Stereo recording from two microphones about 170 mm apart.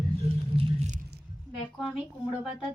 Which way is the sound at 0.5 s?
35° right (ahead or behind).